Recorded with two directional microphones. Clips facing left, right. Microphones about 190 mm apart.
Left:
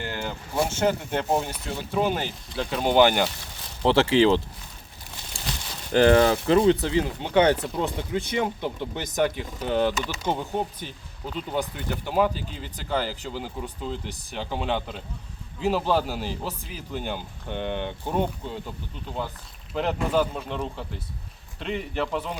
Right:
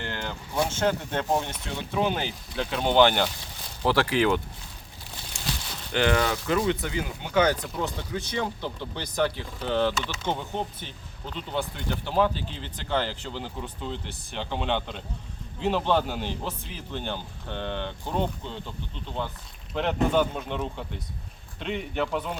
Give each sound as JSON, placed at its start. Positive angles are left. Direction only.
{"t": 0.0, "sound": "speech", "side_deg": 5}
{"t": 3.8, "sound": "speech", "side_deg": 25}
{"t": 5.9, "sound": "speech", "side_deg": 35}